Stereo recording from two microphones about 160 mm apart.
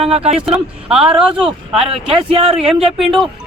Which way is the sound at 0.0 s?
40° right (ahead or behind).